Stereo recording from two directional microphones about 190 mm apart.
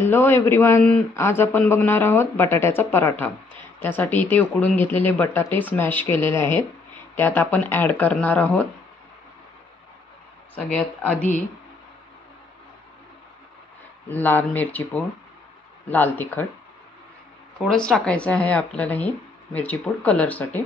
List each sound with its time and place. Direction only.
0.0 s a man's voice: 10° left (ahead or behind)
10.5 s a man's voice: 5° left (ahead or behind)
14.0 s a man's voice: 10° left (ahead or behind)
17.6 s a man's voice: 5° left (ahead or behind)